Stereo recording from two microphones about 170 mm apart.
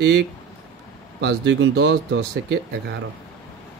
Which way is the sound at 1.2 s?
90° right.